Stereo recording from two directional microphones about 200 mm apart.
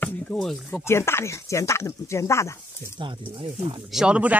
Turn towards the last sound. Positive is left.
turn(degrees=-5)  # may be behind; listen again after turning